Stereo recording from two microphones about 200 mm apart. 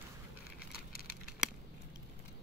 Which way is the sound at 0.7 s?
50° left (ahead or behind).